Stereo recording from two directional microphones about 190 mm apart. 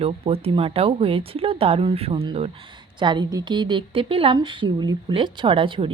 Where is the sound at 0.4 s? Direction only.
30° right (ahead or behind).